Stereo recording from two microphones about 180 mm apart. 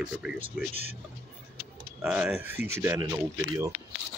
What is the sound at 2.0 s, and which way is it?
Speech, 5° right (ahead or behind).